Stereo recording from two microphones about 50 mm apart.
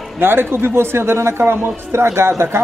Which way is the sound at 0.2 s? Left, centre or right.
Right.